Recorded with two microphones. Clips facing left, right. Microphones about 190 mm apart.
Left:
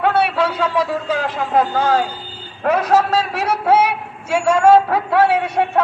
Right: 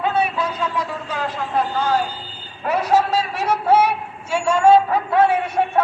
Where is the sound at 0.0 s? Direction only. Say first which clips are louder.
Left 4 dB; 70° left (ahead or behind); by 1.2 s 90° left.